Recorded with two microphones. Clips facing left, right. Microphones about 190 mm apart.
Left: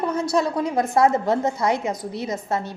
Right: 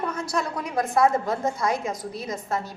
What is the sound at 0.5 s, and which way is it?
A woman's voice, 25° left (ahead or behind).